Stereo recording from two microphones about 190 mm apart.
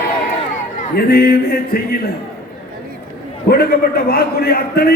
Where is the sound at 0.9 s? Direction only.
55° left (ahead or behind).